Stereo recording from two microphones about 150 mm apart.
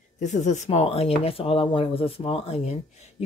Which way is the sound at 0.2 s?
55° left (ahead or behind).